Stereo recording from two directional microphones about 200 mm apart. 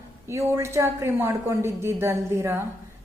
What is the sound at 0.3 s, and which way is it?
Speech, 15° right (ahead or behind).